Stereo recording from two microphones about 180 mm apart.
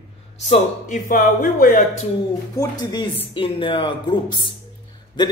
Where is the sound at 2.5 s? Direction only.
25° left (ahead or behind).